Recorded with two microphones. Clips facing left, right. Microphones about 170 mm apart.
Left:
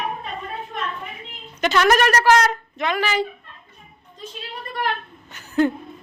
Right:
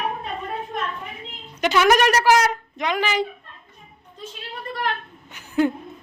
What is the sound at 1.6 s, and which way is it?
Speech, 10° right (ahead or behind).